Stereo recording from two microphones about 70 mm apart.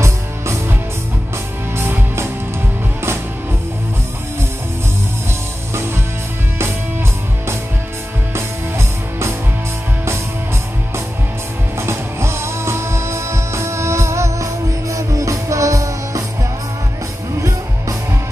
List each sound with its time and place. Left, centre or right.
0.0 s music: right
1.8 s music: right
8.4 s music: right
11.8 s music: right
17.4 s music: right